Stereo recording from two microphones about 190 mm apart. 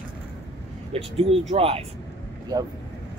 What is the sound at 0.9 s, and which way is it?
Speech, 30° right (ahead or behind).